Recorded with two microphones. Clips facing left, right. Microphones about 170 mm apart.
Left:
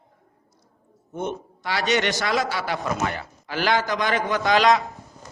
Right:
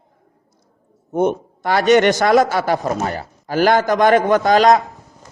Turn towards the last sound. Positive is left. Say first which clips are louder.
# right 6 dB
turn(degrees=-45)  # may be behind; listen again after turning